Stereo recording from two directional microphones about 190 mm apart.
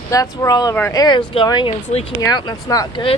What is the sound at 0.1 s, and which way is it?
Speech, 15° left (ahead or behind).